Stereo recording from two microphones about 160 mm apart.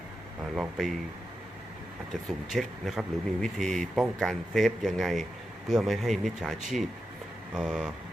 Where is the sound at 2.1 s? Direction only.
Centre (ahead or behind).